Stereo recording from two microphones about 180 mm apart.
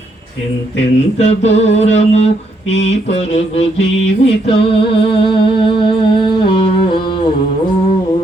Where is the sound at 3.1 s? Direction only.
35° left (ahead or behind).